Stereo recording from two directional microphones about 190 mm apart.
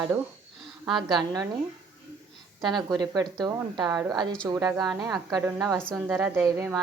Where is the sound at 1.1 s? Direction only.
20° right (ahead or behind).